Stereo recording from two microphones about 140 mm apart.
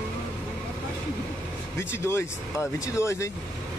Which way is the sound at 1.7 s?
20° left (ahead or behind).